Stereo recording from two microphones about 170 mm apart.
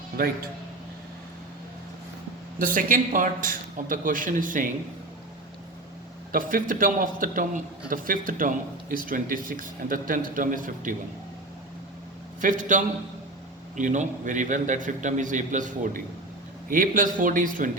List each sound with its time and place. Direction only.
0.2 s speech: 60° right (ahead or behind)
2.6 s a man's voice: 50° right (ahead or behind)
6.3 s a man's voice: 55° right (ahead or behind)
12.4 s a man's voice: 50° right (ahead or behind)